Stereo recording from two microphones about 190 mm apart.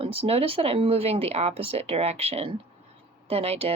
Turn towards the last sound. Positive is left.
turn(degrees=-30)  # may be behind; listen again after turning